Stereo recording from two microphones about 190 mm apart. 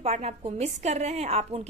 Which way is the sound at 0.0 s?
35° right (ahead or behind).